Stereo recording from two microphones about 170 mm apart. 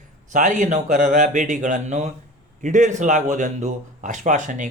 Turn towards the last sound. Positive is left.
turn(degrees=-50)  # may be behind; listen again after turning